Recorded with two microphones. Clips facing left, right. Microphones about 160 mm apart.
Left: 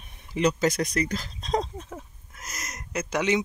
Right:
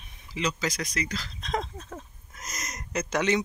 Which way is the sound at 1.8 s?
10° left (ahead or behind).